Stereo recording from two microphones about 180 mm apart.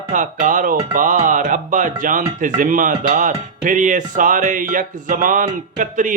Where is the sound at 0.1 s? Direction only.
45° right (ahead or behind).